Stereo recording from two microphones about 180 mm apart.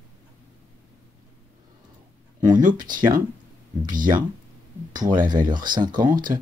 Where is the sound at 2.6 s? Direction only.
50° right (ahead or behind).